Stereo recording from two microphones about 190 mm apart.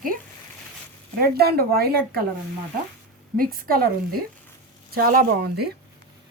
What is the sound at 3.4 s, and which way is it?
Speech, 50° right (ahead or behind).